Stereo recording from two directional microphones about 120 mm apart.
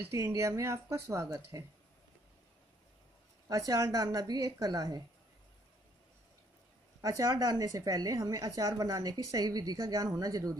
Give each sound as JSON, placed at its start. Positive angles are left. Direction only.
{"t": 0.0, "sound": "speech", "side_deg": -20}
{"t": 3.4, "sound": "speech", "side_deg": -30}
{"t": 7.0, "sound": "a woman's voice", "side_deg": -30}